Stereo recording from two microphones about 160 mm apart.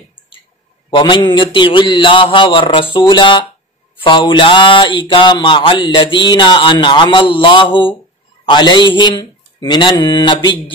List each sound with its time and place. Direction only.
0.8 s a man's voice: 30° left (ahead or behind)
1.3 s a sound: 30° left (ahead or behind)
8.5 s speech: 30° left (ahead or behind)